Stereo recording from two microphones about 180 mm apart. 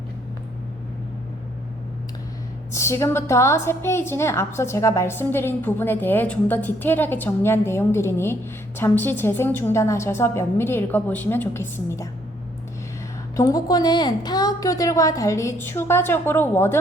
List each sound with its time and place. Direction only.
2.7 s a woman's voice: 15° left (ahead or behind)
13.3 s a woman's voice: 20° left (ahead or behind)